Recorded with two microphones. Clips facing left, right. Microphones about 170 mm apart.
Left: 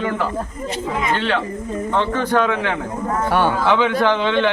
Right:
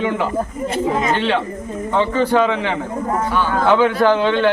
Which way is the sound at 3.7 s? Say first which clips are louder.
Right 3 dB; 10° right (ahead or behind).